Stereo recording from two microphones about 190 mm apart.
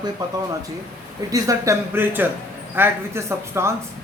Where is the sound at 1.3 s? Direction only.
15° right (ahead or behind).